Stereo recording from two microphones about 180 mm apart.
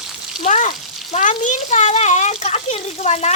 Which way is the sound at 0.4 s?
40° left (ahead or behind).